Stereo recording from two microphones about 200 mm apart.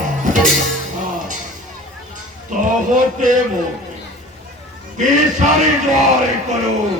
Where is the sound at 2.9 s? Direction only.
40° right (ahead or behind).